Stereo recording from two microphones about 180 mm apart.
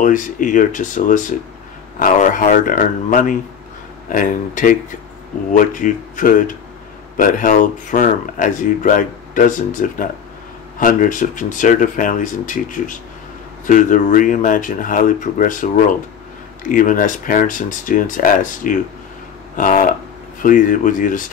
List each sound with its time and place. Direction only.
0.0 s speech: 45° left (ahead or behind)